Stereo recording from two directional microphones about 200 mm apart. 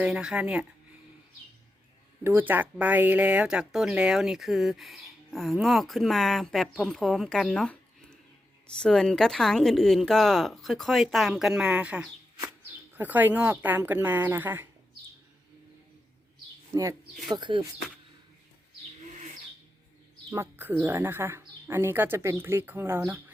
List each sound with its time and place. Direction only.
0.0 s speech: centre (ahead or behind)
2.2 s speech: 10° right (ahead or behind)
16.7 s speech: 20° right (ahead or behind)
20.3 s speech: 10° right (ahead or behind)